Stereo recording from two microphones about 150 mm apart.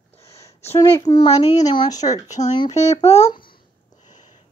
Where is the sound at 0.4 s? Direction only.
20° left (ahead or behind).